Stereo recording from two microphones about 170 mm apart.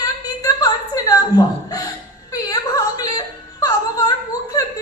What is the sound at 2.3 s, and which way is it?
Yodeling, 20° left (ahead or behind).